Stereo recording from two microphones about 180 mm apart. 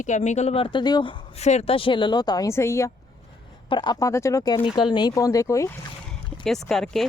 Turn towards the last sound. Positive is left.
turn(degrees=0)  # may be behind; listen again after turning